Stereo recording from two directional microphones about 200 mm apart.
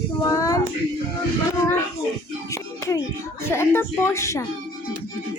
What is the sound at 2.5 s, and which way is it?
Music, 15° left (ahead or behind).